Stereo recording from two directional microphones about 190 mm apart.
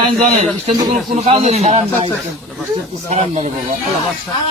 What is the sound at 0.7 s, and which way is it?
Speech, 35° right (ahead or behind).